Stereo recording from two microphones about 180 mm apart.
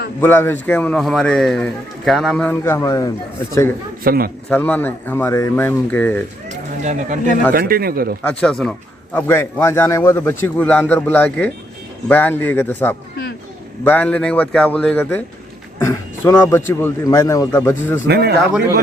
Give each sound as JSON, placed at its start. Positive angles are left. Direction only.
{"t": 0.2, "sound": "a man's voice", "side_deg": 10}
{"t": 4.0, "sound": "a man's voice", "side_deg": -55}
{"t": 4.4, "sound": "a man's voice", "side_deg": 10}
{"t": 6.8, "sound": "speech", "side_deg": -45}
{"t": 7.5, "sound": "a man's voice", "side_deg": -55}
{"t": 8.3, "sound": "a man's voice", "side_deg": 5}
{"t": 18.1, "sound": "a man's voice", "side_deg": -65}